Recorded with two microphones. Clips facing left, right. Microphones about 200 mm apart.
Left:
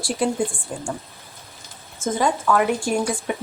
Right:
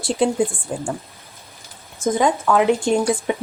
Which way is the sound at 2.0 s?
15° right (ahead or behind).